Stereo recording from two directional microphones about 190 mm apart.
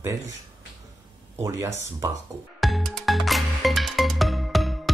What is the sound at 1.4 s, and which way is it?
Speech, 15° right (ahead or behind).